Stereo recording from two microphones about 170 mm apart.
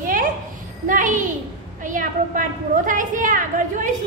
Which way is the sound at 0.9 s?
50° right (ahead or behind).